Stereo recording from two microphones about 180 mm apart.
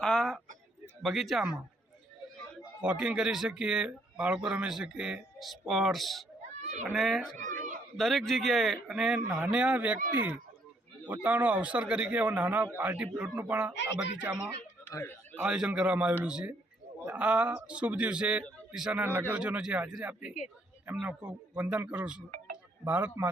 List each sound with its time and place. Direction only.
0.0 s a sound: 5° left (ahead or behind)
1.0 s speech: centre (ahead or behind)
2.8 s speech: 5° right (ahead or behind)
6.6 s children playing: 40° right (ahead or behind)
6.9 s speech: centre (ahead or behind)
11.0 s a man's voice: 10° right (ahead or behind)
14.8 s a sound: 10° left (ahead or behind)
15.4 s a man's voice: 5° right (ahead or behind)